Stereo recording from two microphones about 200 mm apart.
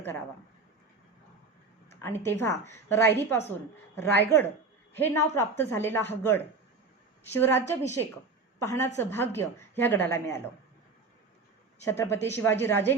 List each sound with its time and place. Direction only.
2.0 s a woman's voice: 10° left (ahead or behind)
8.6 s a woman's voice: 15° left (ahead or behind)
11.9 s a woman's voice: 10° left (ahead or behind)